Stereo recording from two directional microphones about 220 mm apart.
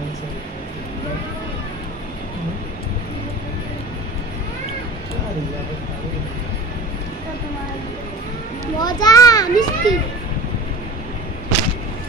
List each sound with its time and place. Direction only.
8.7 s children playing: 20° left (ahead or behind)